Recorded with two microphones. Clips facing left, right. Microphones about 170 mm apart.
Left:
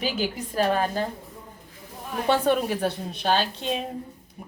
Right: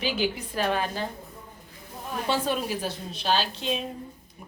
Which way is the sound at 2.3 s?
60° left (ahead or behind).